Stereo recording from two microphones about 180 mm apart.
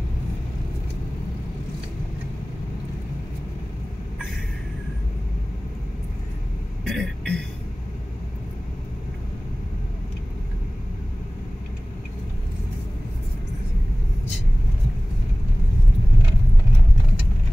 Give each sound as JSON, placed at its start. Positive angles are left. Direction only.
{"t": 6.8, "sound": "vehicle", "side_deg": 0}